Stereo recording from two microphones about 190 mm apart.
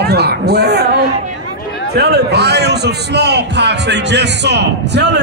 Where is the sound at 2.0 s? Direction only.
60° right (ahead or behind).